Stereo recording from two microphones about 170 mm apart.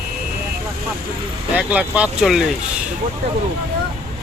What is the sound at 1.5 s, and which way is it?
Speech, 10° right (ahead or behind).